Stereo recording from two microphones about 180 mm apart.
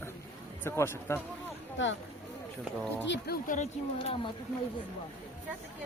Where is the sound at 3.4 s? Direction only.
40° left (ahead or behind).